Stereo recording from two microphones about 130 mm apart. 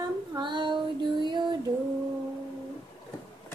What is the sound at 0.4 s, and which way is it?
Child singing, 35° right (ahead or behind).